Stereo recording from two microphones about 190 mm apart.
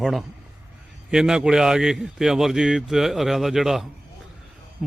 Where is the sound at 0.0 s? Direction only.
Centre (ahead or behind).